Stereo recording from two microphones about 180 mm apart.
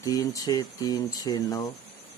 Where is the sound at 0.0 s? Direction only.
20° left (ahead or behind).